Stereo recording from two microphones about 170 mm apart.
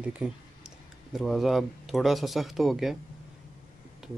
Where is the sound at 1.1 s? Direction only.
Centre (ahead or behind).